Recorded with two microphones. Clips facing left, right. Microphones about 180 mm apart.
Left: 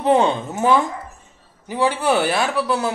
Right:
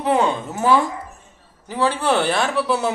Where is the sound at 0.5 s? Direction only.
15° left (ahead or behind).